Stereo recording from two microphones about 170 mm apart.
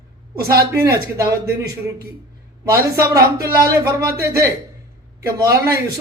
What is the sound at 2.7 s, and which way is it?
Speech, 15° right (ahead or behind).